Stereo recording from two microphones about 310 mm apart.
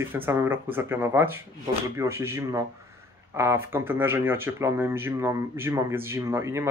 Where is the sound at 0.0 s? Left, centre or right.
Centre.